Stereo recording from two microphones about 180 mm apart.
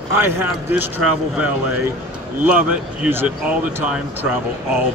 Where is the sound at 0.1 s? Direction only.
15° right (ahead or behind).